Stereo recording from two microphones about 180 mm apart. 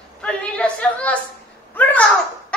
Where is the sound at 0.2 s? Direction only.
5° left (ahead or behind).